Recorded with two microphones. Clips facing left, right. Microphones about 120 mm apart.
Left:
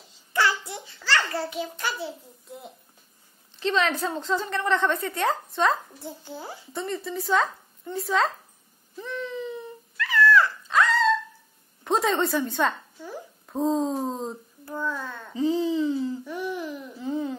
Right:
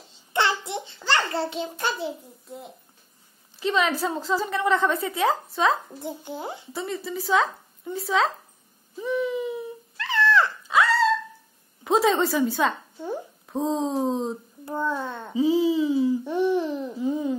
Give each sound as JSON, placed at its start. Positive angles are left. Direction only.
{"t": 0.1, "sound": "a sound", "side_deg": -25}
{"t": 3.5, "sound": "a woman's voice", "side_deg": -5}
{"t": 5.9, "sound": "a child's voice", "side_deg": -20}
{"t": 6.7, "sound": "a woman's voice", "side_deg": -5}
{"t": 9.0, "sound": "a sound", "side_deg": -10}
{"t": 9.9, "sound": "dog", "side_deg": -25}
{"t": 10.7, "sound": "dog", "side_deg": -5}
{"t": 11.8, "sound": "a woman's voice", "side_deg": 0}
{"t": 14.6, "sound": "a child's voice", "side_deg": -25}
{"t": 15.3, "sound": "speech", "side_deg": -10}
{"t": 16.3, "sound": "a child's voice", "side_deg": -25}
{"t": 17.0, "sound": "speech", "side_deg": -15}